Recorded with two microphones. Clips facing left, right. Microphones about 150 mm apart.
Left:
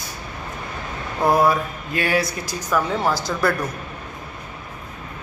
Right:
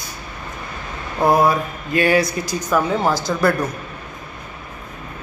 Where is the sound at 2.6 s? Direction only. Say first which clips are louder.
Right 2 dB; 20° right (ahead or behind).